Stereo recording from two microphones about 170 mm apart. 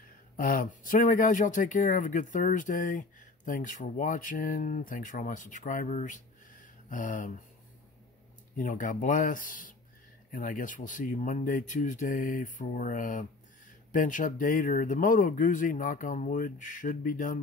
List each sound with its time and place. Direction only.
0.4 s speech: 55° left (ahead or behind)
8.5 s speech: 50° left (ahead or behind)